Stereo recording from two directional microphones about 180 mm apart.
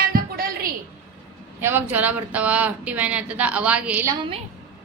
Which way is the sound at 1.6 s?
10° right (ahead or behind).